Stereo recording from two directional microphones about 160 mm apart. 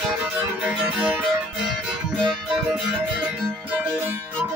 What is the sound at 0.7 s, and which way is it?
Music, 5° right (ahead or behind).